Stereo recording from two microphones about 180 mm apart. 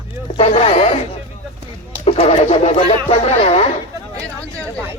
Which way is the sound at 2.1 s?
35° left (ahead or behind).